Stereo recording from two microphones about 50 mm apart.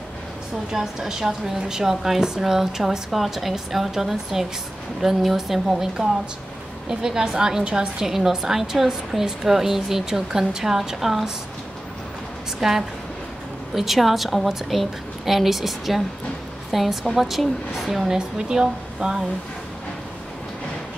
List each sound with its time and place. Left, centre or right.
0.7 s a woman's voice: centre
12.5 s a woman's voice: centre
18.1 s a woman's voice: centre